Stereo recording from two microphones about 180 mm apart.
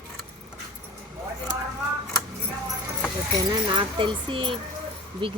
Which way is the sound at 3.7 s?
30° right (ahead or behind).